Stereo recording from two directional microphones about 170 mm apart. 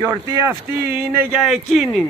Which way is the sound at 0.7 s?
5° right (ahead or behind).